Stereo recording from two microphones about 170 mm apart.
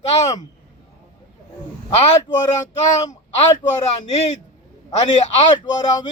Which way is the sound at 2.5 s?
45° left (ahead or behind).